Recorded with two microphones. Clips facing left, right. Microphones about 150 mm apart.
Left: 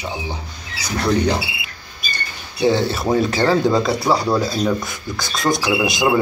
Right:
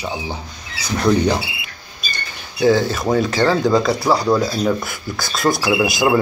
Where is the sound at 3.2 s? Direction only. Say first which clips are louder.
Even; centre (ahead or behind).